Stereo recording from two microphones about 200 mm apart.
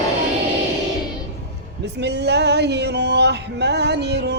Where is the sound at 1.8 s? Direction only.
55° right (ahead or behind).